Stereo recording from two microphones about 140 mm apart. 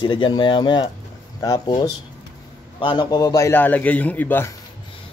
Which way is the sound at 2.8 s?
30° left (ahead or behind).